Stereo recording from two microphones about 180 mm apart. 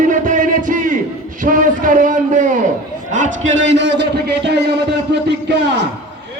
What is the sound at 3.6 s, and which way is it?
A man's voice, 80° right.